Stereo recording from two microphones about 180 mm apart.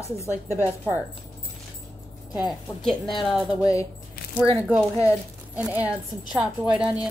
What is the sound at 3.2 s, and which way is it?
Speech, centre (ahead or behind).